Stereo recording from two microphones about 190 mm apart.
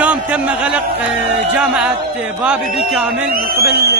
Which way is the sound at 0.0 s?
5° right (ahead or behind).